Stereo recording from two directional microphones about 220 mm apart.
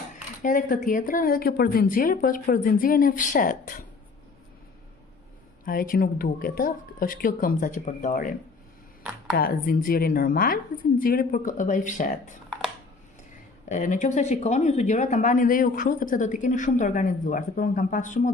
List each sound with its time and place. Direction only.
0.4 s speech: 35° left (ahead or behind)
5.7 s speech: 40° left (ahead or behind)
9.4 s speech: 40° left (ahead or behind)
13.7 s speech: 35° left (ahead or behind)